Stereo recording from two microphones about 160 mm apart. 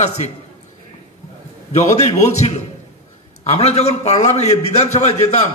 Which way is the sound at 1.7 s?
45° left (ahead or behind).